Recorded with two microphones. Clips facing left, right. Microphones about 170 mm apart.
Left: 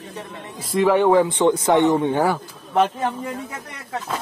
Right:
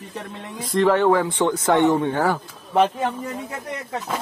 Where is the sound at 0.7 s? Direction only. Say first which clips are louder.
Left 2 dB; 10° left (ahead or behind).